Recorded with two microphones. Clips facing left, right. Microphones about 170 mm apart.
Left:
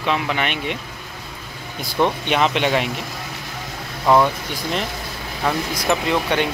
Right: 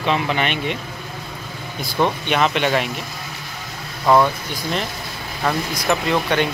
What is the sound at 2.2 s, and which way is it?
Speech, 20° left (ahead or behind).